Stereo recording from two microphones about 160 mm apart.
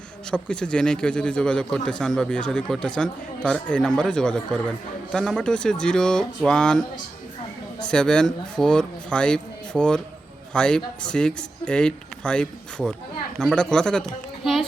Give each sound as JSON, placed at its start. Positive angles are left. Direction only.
{"t": 0.3, "sound": "a man's voice", "side_deg": 5}
{"t": 7.9, "sound": "a man's voice", "side_deg": 5}